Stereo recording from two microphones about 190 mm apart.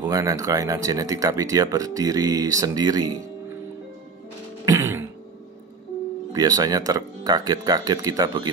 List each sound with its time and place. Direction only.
0.0 s speech: 15° right (ahead or behind)
4.6 s music: 15° right (ahead or behind)
6.3 s speech: 20° right (ahead or behind)